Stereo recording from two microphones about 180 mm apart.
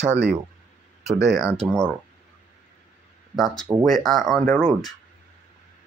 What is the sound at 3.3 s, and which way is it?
Speech, centre (ahead or behind).